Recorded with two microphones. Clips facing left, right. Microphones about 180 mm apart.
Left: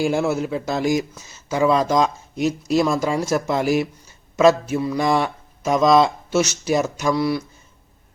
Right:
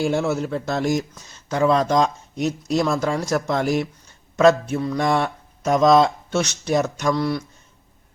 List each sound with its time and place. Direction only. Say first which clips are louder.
0.0 s speech: left 1 dB; centre (ahead or behind)